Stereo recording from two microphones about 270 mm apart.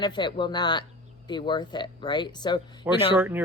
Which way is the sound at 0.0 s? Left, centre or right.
Centre.